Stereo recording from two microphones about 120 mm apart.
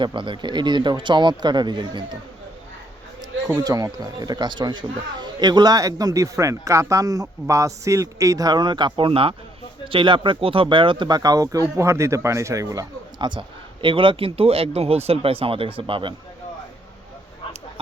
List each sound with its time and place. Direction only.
0.0 s speech: 40° right (ahead or behind)
3.2 s a man's voice: 30° right (ahead or behind); by 16.1 s 45° right (ahead or behind)